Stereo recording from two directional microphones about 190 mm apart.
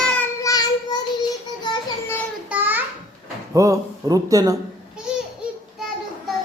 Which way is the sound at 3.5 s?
15° right (ahead or behind).